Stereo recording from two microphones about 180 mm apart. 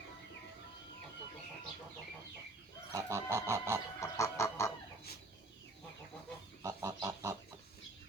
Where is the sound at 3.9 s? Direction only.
15° left (ahead or behind).